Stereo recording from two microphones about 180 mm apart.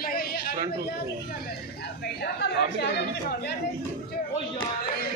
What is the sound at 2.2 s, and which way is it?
Speech, 65° left (ahead or behind).